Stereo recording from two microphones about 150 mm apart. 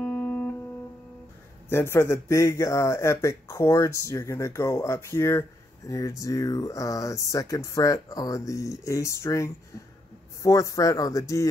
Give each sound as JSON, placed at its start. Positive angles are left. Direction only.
{"t": 0.0, "sound": "music", "side_deg": 10}
{"t": 1.7, "sound": "speech", "side_deg": 15}